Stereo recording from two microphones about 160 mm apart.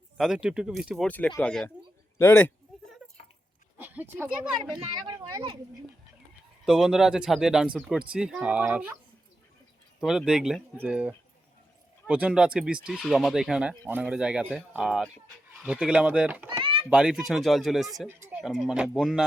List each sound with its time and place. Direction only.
0.2 s speech: 5° right (ahead or behind)
1.0 s speech: 10° left (ahead or behind)
3.8 s speech: 10° right (ahead or behind)
6.7 s speech: 5° right (ahead or behind)
10.0 s speech: 5° right (ahead or behind)
18.1 s a sound: 15° right (ahead or behind)
18.4 s speech: centre (ahead or behind)